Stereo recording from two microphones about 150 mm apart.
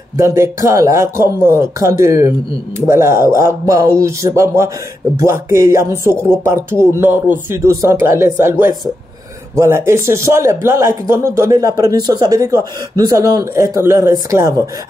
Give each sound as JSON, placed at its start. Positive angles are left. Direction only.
{"t": 0.2, "sound": "speech", "side_deg": -20}